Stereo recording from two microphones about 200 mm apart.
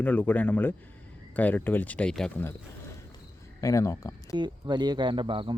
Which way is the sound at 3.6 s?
15° left (ahead or behind).